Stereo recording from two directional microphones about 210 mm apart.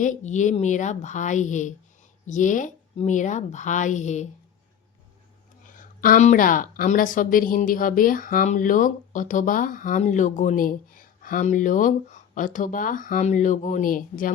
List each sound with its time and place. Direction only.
0.0 s a woman's voice: 35° left (ahead or behind)
5.6 s a woman's voice: 40° left (ahead or behind)